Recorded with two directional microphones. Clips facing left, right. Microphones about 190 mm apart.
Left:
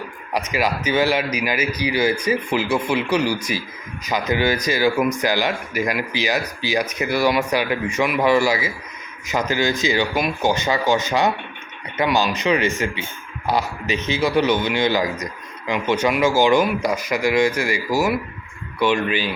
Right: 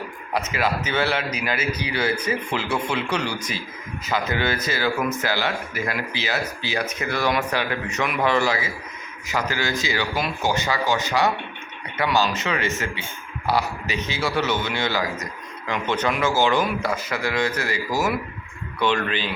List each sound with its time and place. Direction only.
0.3 s speech: 15° left (ahead or behind)